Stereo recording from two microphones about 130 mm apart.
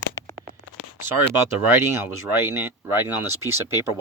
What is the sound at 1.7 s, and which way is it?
Speech, 15° right (ahead or behind).